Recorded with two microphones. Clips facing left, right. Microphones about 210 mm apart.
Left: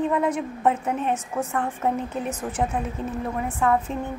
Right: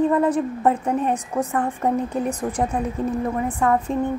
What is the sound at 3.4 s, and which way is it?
Speech, centre (ahead or behind).